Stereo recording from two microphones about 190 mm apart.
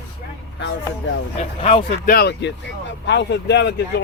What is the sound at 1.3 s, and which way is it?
Speech, 30° left (ahead or behind).